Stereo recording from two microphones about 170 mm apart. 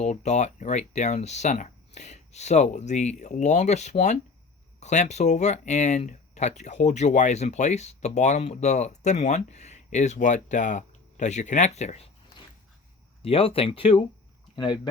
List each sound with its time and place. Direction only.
0.0 s speech: 45° left (ahead or behind)
13.2 s speech: 35° left (ahead or behind)